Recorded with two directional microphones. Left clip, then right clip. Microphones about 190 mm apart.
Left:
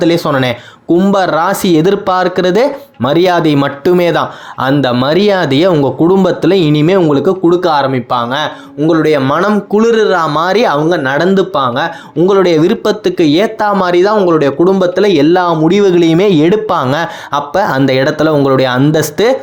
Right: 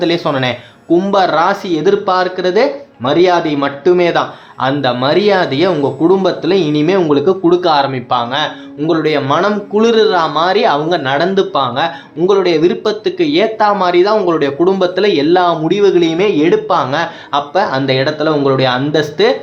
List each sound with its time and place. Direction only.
0.0 s speech: 30° left (ahead or behind)
7.4 s speech: 20° left (ahead or behind)
10.2 s speech: 35° left (ahead or behind)
12.3 s speech: 35° left (ahead or behind); by 16.6 s 55° left (ahead or behind)
16.6 s speech: 40° left (ahead or behind)